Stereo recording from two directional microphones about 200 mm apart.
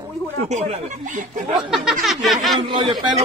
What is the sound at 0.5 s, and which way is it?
Speech, 35° right (ahead or behind).